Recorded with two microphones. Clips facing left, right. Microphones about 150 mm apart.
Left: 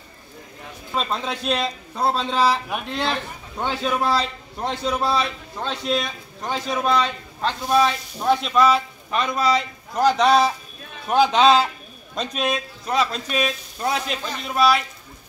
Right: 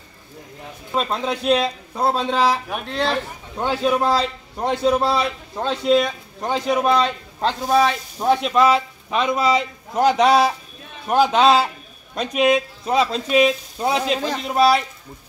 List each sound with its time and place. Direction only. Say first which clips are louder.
0.9 s a man's voice: right 3 dB; 15° right (ahead or behind)
2.7 s a man's voice: right 3 dB; centre (ahead or behind); by 7.0 s 15° right (ahead or behind)
7.0 s a man's voice: right 3 dB; 35° right (ahead or behind)
8.5 s a man's voice: right 2 dB; 15° right (ahead or behind)